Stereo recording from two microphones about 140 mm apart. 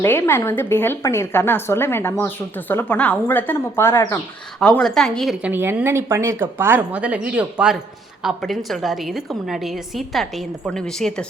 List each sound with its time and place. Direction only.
0.0 s speech: 15° left (ahead or behind)
4.6 s a woman's voice: 5° left (ahead or behind)
5.5 s a woman's voice: 15° right (ahead or behind); by 11.3 s 5° left (ahead or behind)